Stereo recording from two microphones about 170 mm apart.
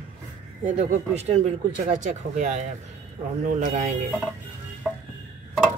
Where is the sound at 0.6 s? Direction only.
45° right (ahead or behind).